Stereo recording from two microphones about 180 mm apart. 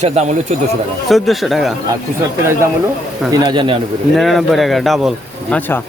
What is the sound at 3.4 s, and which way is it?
Speech, 25° right (ahead or behind).